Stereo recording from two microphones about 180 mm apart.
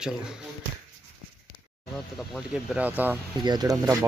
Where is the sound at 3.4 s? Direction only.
25° right (ahead or behind).